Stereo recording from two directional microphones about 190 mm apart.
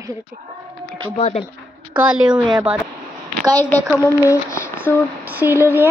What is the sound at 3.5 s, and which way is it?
Speech, 10° left (ahead or behind).